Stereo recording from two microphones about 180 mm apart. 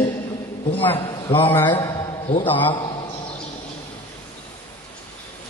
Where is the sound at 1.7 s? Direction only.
20° left (ahead or behind).